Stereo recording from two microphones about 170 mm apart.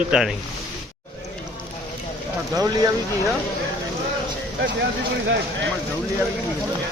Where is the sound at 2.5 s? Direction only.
20° right (ahead or behind).